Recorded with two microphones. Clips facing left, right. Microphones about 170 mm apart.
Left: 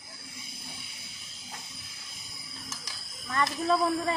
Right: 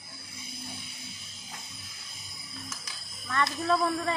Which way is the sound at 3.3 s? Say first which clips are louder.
Even; 5° left (ahead or behind).